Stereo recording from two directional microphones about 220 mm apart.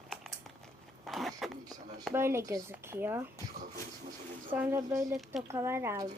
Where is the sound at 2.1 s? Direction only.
10° right (ahead or behind).